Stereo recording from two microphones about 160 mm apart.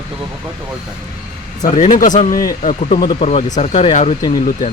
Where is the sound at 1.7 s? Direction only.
50° left (ahead or behind).